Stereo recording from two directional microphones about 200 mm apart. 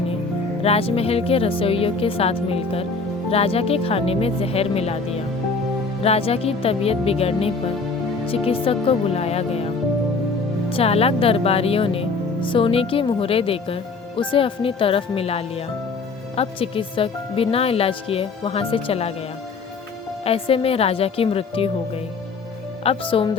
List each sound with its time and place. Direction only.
0.6 s speech: 30° left (ahead or behind)
10.7 s speech: 30° left (ahead or behind)
20.2 s speech: 30° left (ahead or behind)
22.8 s speech: 30° left (ahead or behind)